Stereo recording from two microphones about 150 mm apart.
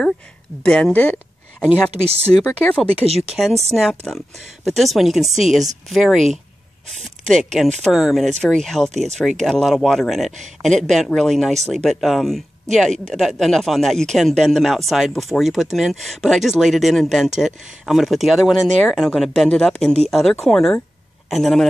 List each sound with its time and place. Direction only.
0.7 s speech: 5° left (ahead or behind)
1.9 s speech: 40° right (ahead or behind)
2.2 s speech: 5° left (ahead or behind)